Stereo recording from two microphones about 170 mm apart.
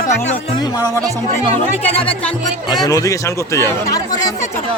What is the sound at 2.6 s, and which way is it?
Speech, 20° left (ahead or behind).